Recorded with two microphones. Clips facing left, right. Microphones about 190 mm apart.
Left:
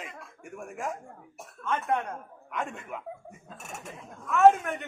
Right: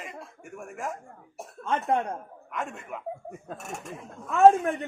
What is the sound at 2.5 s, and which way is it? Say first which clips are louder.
Speech: even; centre (ahead or behind).